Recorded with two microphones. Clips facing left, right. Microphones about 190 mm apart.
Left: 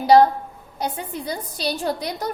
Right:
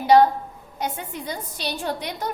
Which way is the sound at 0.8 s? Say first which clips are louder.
Left 2 dB; 35° left (ahead or behind).